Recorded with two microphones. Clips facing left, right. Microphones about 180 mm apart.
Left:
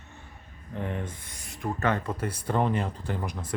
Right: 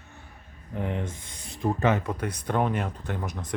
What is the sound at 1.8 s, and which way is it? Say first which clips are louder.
Speech: right 2 dB; 10° right (ahead or behind).